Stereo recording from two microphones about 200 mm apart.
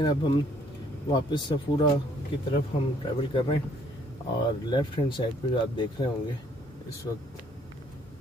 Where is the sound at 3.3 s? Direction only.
25° left (ahead or behind).